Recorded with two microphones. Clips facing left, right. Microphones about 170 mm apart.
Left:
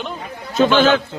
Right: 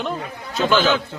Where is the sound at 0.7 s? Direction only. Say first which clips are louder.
Left 3 dB; 55° left (ahead or behind).